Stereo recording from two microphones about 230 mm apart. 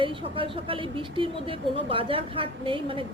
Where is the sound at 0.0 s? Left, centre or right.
Right.